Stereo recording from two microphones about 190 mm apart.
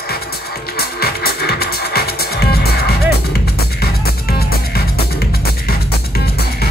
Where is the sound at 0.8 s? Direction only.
55° left (ahead or behind).